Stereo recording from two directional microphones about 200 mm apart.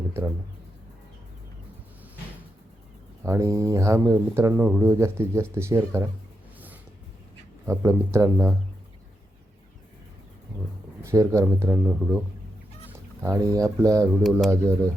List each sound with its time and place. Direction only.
3.2 s speech: 15° right (ahead or behind)
7.7 s speech: 15° right (ahead or behind)
11.0 s speech: 15° right (ahead or behind)
13.2 s speech: 15° right (ahead or behind)